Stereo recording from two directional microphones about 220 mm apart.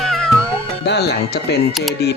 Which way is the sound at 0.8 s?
50° left (ahead or behind).